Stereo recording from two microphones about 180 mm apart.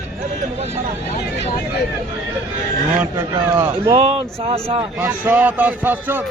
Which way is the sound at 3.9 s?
30° right (ahead or behind).